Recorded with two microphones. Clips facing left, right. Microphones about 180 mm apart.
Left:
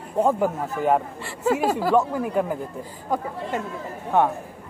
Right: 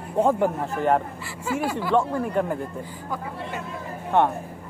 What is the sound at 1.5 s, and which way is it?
Speech, 40° left (ahead or behind).